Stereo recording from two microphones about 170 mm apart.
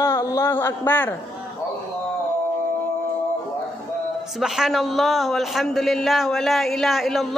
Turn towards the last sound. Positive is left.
turn(degrees=0)  # may be behind; listen again after turning